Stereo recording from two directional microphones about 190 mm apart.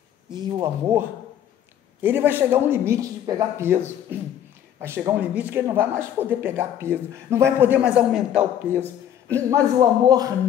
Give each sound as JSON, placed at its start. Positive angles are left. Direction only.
{"t": 0.3, "sound": "speech", "side_deg": -20}
{"t": 2.0, "sound": "speech", "side_deg": -10}
{"t": 9.3, "sound": "speech", "side_deg": -20}